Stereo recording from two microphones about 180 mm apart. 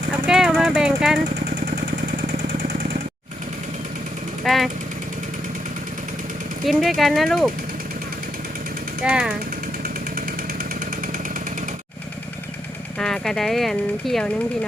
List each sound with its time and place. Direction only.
0.3 s jackhammer: 5° right (ahead or behind)
4.4 s speech: centre (ahead or behind)
6.7 s speech: centre (ahead or behind)
9.0 s speech: 5° right (ahead or behind)
10.2 s chainsaw: 50° right (ahead or behind)
13.0 s speech: 5° left (ahead or behind)